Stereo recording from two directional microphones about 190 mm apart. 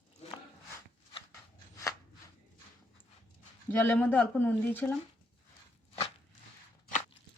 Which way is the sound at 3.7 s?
10° left (ahead or behind).